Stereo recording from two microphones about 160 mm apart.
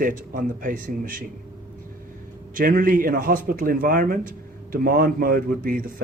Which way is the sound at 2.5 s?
60° right (ahead or behind).